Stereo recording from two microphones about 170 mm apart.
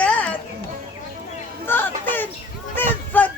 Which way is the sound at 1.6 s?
10° left (ahead or behind).